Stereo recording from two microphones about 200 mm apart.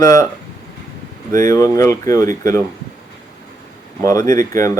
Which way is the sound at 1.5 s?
15° left (ahead or behind).